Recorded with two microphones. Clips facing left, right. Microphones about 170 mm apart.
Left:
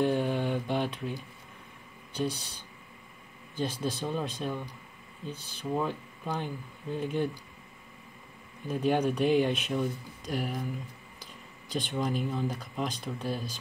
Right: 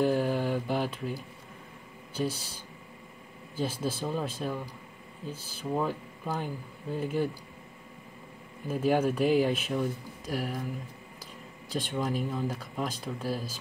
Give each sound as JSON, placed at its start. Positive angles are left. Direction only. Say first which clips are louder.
{"t": 0.0, "sound": "a sound", "louder": "right 1 dB", "side_deg": -5}
{"t": 2.1, "sound": "speech", "louder": "even", "side_deg": -5}
{"t": 8.6, "sound": "speech", "louder": "right 1 dB", "side_deg": -5}
{"t": 11.7, "sound": "speech", "louder": "even", "side_deg": 0}